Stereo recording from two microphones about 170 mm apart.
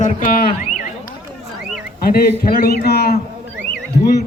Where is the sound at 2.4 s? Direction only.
60° left (ahead or behind).